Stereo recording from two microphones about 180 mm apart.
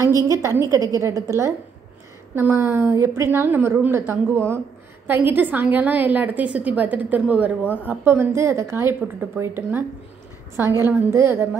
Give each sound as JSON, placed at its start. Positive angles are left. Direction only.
{"t": 0.0, "sound": "a woman's voice", "side_deg": -15}